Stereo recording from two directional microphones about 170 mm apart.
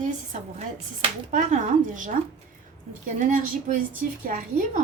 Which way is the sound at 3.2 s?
50° right (ahead or behind).